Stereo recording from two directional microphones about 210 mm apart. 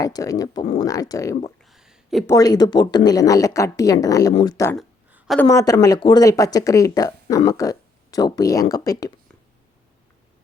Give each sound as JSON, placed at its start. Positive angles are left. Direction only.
{"t": 0.0, "sound": "speech", "side_deg": 15}
{"t": 0.6, "sound": "speech", "side_deg": 30}
{"t": 0.9, "sound": "speech", "side_deg": 15}
{"t": 1.6, "sound": "a sound", "side_deg": 0}
{"t": 2.2, "sound": "speech", "side_deg": 15}
{"t": 4.8, "sound": "a sound", "side_deg": 0}
{"t": 5.5, "sound": "speech", "side_deg": 15}